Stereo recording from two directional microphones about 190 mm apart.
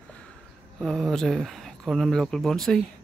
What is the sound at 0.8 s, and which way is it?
Speech, centre (ahead or behind).